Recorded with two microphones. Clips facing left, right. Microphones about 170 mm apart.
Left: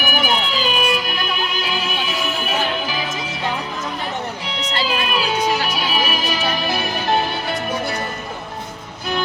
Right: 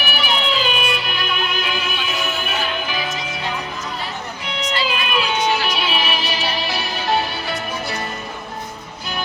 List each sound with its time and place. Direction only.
0.0 s music: 45° left (ahead or behind)
4.4 s music: 35° left (ahead or behind); by 7.9 s 55° left (ahead or behind)